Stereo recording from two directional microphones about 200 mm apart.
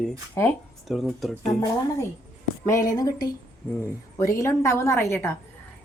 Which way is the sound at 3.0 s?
20° left (ahead or behind).